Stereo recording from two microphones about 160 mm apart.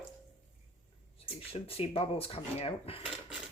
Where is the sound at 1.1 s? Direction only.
40° left (ahead or behind).